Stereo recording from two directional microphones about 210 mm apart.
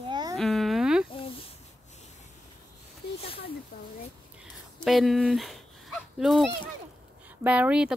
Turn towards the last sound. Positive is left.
turn(degrees=-5)  # may be behind; listen again after turning